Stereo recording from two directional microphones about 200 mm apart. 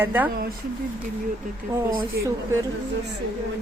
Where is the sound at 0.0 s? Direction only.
10° right (ahead or behind).